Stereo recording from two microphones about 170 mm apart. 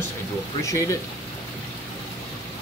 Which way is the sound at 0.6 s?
20° left (ahead or behind).